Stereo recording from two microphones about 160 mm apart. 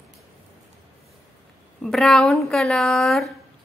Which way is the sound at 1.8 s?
Centre (ahead or behind).